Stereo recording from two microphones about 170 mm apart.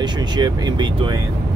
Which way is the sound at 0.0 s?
25° right (ahead or behind).